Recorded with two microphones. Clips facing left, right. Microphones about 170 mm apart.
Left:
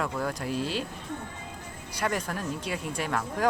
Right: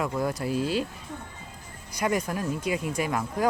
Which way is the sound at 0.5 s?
45° right (ahead or behind).